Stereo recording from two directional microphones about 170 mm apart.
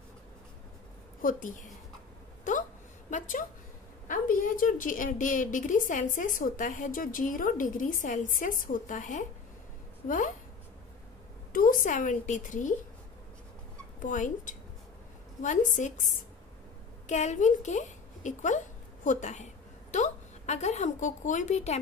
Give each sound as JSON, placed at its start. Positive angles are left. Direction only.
{"t": 1.2, "sound": "a woman's voice", "side_deg": 50}
{"t": 3.1, "sound": "a woman's voice", "side_deg": 50}
{"t": 11.5, "sound": "a woman's voice", "side_deg": 55}
{"t": 14.0, "sound": "a woman's voice", "side_deg": 50}